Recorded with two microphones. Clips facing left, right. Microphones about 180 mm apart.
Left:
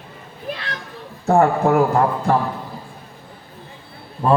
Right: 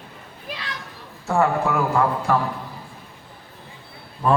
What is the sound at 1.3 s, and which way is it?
A man's voice, 40° left (ahead or behind).